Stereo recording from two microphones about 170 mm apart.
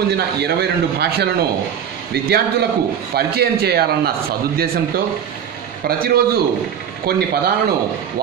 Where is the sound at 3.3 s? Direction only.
65° right (ahead or behind).